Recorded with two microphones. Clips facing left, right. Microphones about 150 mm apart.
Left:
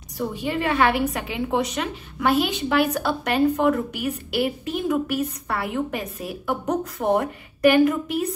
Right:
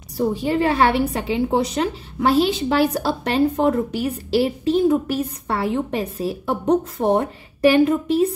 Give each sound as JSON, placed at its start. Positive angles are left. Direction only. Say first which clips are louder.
{"t": 0.2, "sound": "a woman's voice", "louder": "right 6 dB", "side_deg": -35}